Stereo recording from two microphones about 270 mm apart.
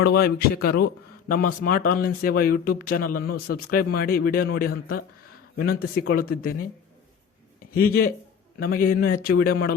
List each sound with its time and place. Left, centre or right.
0.0 s speech: left
7.7 s speech: left